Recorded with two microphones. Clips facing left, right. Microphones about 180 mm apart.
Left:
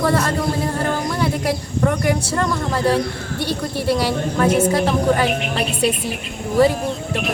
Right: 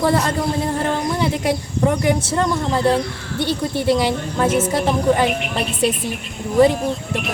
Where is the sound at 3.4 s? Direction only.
Centre (ahead or behind).